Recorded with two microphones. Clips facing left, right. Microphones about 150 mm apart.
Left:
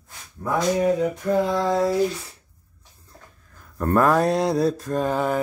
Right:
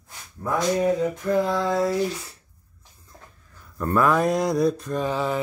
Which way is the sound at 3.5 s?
45° left (ahead or behind).